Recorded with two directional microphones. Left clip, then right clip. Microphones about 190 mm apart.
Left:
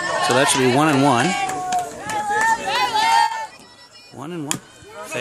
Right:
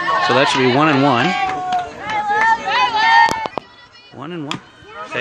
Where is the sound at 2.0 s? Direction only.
45° left (ahead or behind).